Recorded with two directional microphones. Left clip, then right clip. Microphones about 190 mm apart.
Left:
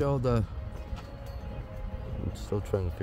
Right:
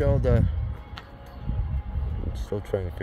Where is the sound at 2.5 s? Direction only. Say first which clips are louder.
Right 2 dB; centre (ahead or behind).